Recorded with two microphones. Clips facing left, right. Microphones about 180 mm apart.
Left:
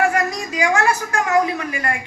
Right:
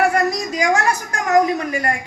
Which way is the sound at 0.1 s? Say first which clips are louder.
Right 3 dB; 40° right (ahead or behind).